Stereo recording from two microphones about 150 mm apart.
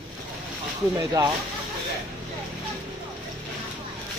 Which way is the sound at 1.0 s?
25° right (ahead or behind).